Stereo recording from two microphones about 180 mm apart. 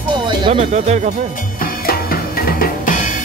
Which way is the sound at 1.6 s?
55° left (ahead or behind).